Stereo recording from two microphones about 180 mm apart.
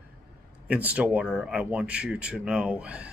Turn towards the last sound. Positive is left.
turn(degrees=-5)  # may be behind; listen again after turning